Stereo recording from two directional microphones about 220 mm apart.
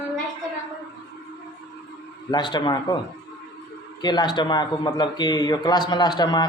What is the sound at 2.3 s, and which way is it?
Speech, 20° left (ahead or behind).